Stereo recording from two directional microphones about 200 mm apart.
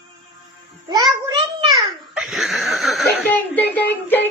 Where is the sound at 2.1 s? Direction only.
Centre (ahead or behind).